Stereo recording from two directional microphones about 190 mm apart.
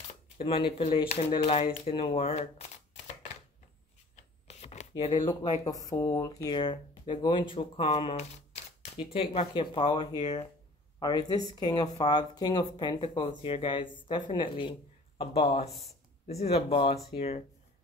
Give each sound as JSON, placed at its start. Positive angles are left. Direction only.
{"t": 0.5, "sound": "speech", "side_deg": 30}
{"t": 4.5, "sound": "speech", "side_deg": 35}
{"t": 11.0, "sound": "speech", "side_deg": 20}